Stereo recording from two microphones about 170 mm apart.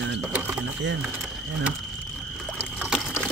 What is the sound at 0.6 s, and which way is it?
Speech, 90° right.